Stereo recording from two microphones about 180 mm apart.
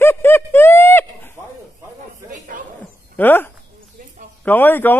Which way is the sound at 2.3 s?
45° right (ahead or behind).